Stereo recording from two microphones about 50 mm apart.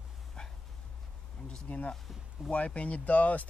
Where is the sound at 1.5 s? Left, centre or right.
Left.